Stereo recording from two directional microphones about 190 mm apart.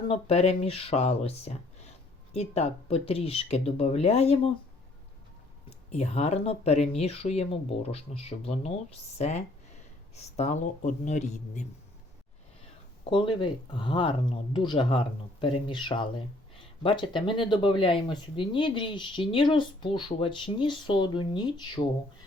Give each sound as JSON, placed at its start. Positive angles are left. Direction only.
{"t": 0.1, "sound": "speech", "side_deg": 30}
{"t": 5.9, "sound": "speech", "side_deg": 35}
{"t": 13.1, "sound": "speech", "side_deg": 25}